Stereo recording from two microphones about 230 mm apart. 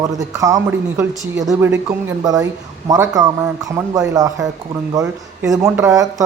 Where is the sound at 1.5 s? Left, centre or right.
Centre.